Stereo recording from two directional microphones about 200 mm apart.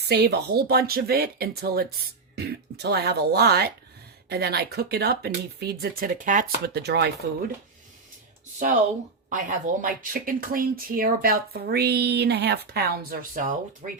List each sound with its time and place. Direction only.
0.1 s speech: 55° right (ahead or behind); by 6.4 s 40° right (ahead or behind)
6.7 s speech: 55° right (ahead or behind)
9.3 s speech: 40° right (ahead or behind)